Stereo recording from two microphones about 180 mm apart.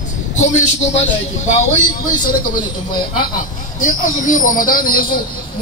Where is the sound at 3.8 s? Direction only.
45° left (ahead or behind).